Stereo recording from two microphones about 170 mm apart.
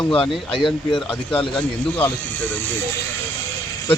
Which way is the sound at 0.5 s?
30° left (ahead or behind).